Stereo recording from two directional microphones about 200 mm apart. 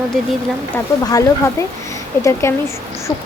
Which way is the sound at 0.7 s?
15° left (ahead or behind).